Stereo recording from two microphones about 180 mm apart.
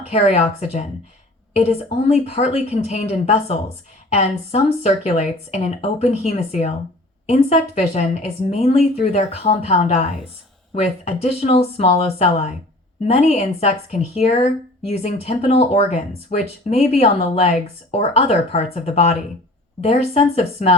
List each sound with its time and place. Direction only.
0.1 s speech: 35° left (ahead or behind)
2.0 s speech: 35° left (ahead or behind)